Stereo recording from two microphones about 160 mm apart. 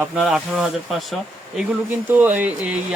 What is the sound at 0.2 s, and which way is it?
Speech, centre (ahead or behind).